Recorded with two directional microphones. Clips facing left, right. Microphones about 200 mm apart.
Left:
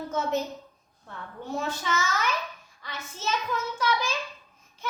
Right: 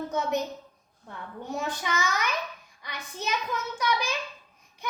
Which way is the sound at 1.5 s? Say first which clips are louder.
Left 1 dB; 15° right (ahead or behind).